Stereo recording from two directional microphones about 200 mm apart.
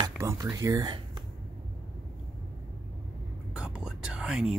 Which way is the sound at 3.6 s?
5° right (ahead or behind).